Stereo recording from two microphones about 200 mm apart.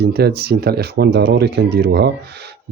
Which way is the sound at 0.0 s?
55° right (ahead or behind).